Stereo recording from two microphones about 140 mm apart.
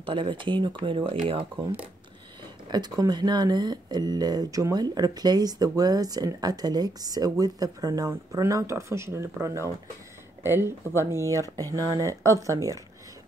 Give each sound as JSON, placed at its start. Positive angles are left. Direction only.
{"t": 0.0, "sound": "speech", "side_deg": -35}
{"t": 2.7, "sound": "speech", "side_deg": -30}